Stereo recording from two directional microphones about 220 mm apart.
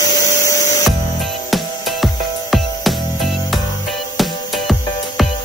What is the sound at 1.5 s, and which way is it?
Music, centre (ahead or behind).